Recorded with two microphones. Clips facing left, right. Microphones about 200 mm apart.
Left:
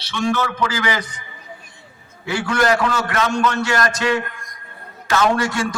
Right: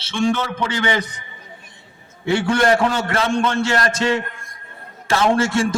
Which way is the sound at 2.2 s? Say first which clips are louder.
Right 2 dB; 25° right (ahead or behind).